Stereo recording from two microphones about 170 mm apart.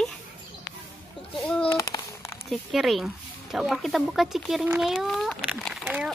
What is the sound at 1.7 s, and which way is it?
Speech, 20° left (ahead or behind).